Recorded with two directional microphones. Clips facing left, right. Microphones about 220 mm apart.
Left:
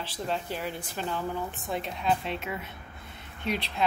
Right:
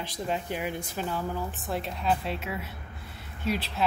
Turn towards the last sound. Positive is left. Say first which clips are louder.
# right 1 dB
turn(degrees=-5)  # may be behind; listen again after turning